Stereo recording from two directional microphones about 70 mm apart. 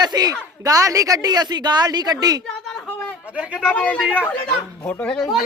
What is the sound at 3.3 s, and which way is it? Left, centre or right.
Speech, centre.